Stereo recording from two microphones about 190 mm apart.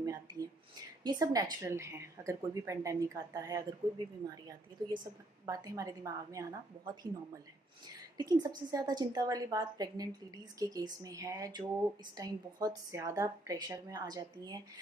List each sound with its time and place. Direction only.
0.0 s a sound: 20° right (ahead or behind)
1.0 s a woman's voice: 20° right (ahead or behind)
8.2 s a woman's voice: 20° right (ahead or behind)